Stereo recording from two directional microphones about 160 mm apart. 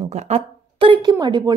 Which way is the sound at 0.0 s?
40° right (ahead or behind).